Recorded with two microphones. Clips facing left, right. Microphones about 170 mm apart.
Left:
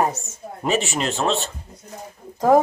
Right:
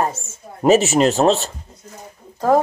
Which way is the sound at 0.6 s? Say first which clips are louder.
Right 9 dB; 40° right (ahead or behind).